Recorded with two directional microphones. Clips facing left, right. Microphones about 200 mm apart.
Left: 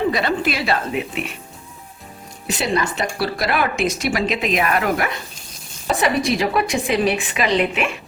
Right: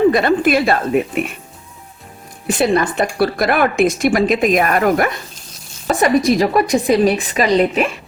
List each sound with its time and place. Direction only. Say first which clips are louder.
0.1 s speech: right 7 dB; 50° right (ahead or behind)
2.5 s a woman's voice: right 6 dB; 50° right (ahead or behind)